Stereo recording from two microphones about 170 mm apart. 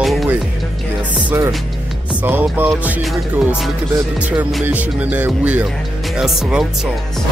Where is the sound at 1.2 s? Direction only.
15° right (ahead or behind).